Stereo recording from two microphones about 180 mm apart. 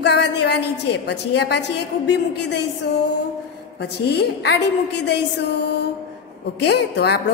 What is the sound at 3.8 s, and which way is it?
A woman's voice, 65° left (ahead or behind).